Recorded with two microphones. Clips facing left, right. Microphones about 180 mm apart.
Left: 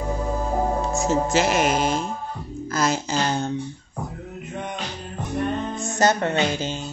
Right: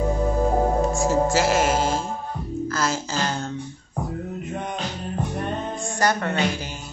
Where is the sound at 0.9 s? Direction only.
20° left (ahead or behind).